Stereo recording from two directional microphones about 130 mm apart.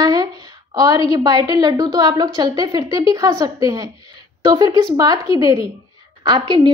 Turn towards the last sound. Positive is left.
turn(degrees=-35)  # may be behind; listen again after turning